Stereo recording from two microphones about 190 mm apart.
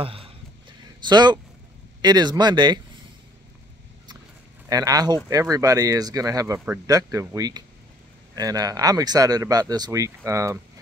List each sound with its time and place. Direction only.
0.0 s speech: 30° right (ahead or behind)
4.6 s speech: 20° right (ahead or behind)